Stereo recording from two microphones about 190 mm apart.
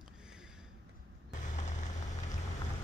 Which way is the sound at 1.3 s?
40° left (ahead or behind).